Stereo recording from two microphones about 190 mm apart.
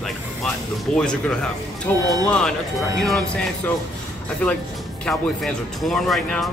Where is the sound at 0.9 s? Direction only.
5° left (ahead or behind).